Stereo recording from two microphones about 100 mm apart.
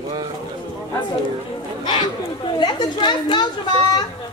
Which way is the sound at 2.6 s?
50° left (ahead or behind).